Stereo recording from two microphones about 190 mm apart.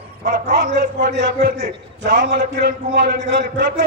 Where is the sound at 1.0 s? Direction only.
40° right (ahead or behind).